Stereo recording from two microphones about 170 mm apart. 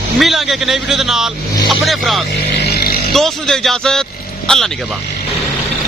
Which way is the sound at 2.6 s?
70° left (ahead or behind).